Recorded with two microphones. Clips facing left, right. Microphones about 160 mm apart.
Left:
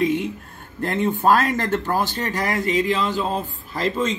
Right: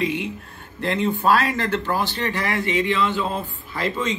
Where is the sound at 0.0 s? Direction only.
45° left (ahead or behind).